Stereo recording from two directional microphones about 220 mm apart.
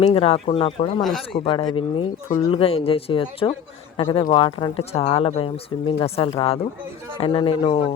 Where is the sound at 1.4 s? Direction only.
20° left (ahead or behind).